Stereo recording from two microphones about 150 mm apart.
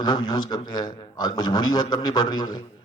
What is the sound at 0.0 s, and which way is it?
A man's voice, 30° left (ahead or behind).